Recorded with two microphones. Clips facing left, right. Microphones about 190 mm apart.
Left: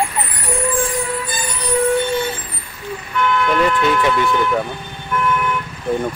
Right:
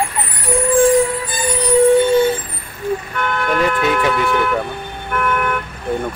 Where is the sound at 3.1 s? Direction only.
50° right (ahead or behind).